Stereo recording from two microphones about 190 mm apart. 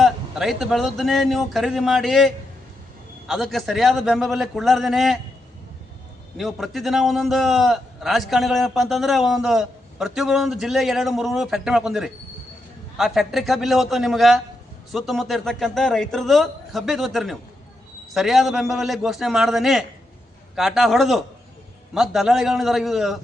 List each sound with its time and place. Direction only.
0.0 s a man's voice: centre (ahead or behind)
6.3 s a man's voice: centre (ahead or behind)